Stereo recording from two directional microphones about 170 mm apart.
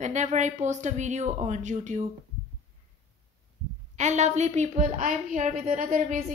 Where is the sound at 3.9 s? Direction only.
45° right (ahead or behind).